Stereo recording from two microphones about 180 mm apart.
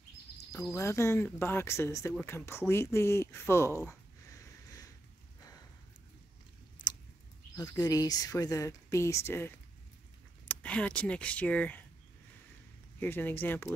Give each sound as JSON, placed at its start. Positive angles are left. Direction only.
{"t": 0.7, "sound": "speech", "side_deg": 15}
{"t": 3.8, "sound": "a sound", "side_deg": 20}
{"t": 7.5, "sound": "speech", "side_deg": 20}
{"t": 10.5, "sound": "speech", "side_deg": 5}
{"t": 13.0, "sound": "speech", "side_deg": 10}